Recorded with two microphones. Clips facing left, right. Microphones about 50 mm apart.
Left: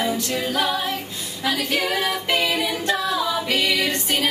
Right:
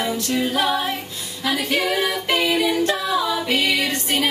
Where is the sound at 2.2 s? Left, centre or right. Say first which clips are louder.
Right 2 dB; right.